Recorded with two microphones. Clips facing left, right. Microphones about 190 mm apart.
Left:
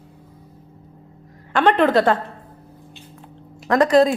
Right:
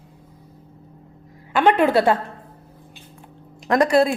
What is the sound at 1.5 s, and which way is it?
Speech, 10° right (ahead or behind).